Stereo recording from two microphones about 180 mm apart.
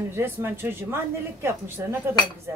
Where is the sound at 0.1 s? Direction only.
15° right (ahead or behind).